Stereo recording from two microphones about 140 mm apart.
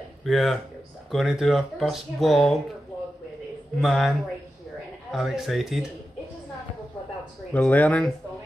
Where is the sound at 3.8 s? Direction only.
Centre (ahead or behind).